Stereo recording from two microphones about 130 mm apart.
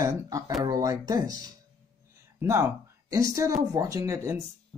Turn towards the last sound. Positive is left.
turn(degrees=-20)  # may be behind; listen again after turning